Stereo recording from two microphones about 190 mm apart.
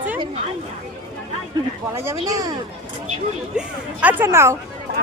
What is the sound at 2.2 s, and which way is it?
Speech, 20° right (ahead or behind).